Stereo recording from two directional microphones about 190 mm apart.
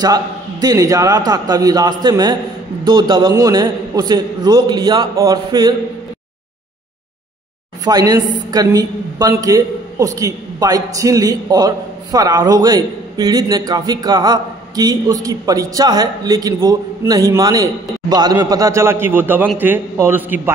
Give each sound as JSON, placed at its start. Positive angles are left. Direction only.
{"t": 0.0, "sound": "a man's voice", "side_deg": -20}
{"t": 7.8, "sound": "a man's voice", "side_deg": -20}